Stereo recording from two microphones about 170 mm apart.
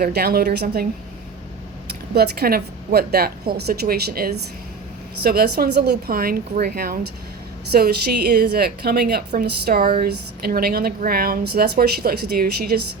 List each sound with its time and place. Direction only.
0.0 s speech: 65° right (ahead or behind)
2.1 s a woman's voice: 70° right (ahead or behind)